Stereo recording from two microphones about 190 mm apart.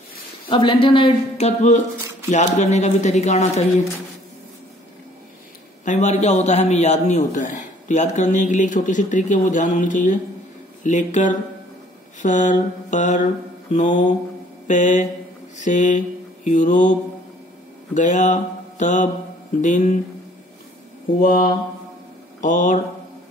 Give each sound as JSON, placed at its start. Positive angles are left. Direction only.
{"t": 0.5, "sound": "a man's voice", "side_deg": 25}
{"t": 5.9, "sound": "a man's voice", "side_deg": 40}
{"t": 17.9, "sound": "mantra", "side_deg": 40}
{"t": 19.6, "sound": "a man's voice", "side_deg": 40}
{"t": 21.2, "sound": "a man's voice", "side_deg": 50}